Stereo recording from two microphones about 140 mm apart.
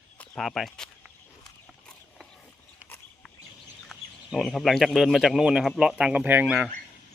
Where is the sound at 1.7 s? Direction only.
5° left (ahead or behind).